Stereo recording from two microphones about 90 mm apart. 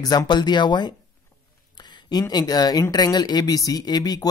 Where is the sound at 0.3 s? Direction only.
55° left (ahead or behind).